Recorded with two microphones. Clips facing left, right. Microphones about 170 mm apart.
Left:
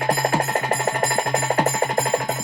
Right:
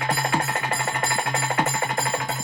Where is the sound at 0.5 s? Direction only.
40° left (ahead or behind).